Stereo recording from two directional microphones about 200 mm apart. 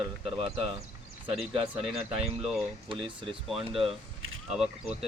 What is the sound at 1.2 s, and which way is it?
Speech, centre (ahead or behind).